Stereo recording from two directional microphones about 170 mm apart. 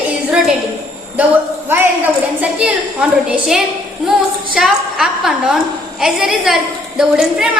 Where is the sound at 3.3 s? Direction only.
5° right (ahead or behind).